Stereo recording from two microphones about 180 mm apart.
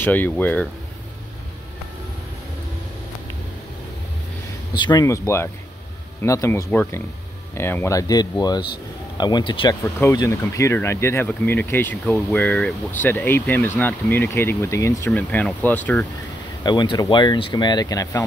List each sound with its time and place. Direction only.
0.0 s speech: 10° left (ahead or behind)
4.7 s speech: 25° left (ahead or behind)
9.9 s speech: 15° left (ahead or behind)
16.6 s speech: 25° left (ahead or behind)